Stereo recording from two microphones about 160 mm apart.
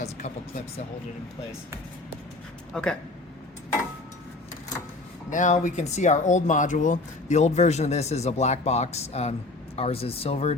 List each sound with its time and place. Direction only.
0.0 s a sound: 50° left (ahead or behind)
2.7 s speech: 5° left (ahead or behind)
5.3 s speech: 50° left (ahead or behind)